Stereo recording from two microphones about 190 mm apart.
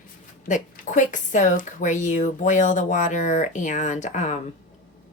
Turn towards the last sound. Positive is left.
turn(degrees=40)  # may be behind; listen again after turning